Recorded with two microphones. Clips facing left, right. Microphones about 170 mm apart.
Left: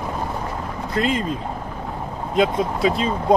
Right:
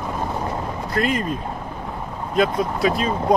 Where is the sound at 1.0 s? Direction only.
20° left (ahead or behind).